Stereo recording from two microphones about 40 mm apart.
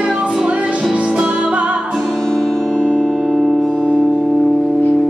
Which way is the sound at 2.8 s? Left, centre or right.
Right.